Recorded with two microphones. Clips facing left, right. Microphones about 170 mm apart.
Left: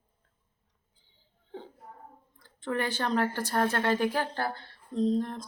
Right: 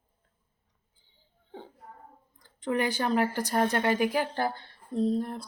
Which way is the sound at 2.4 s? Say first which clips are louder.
Right 3 dB; 15° right (ahead or behind).